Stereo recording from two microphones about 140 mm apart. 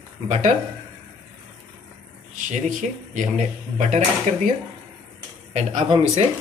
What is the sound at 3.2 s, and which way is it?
Speech, 55° right (ahead or behind).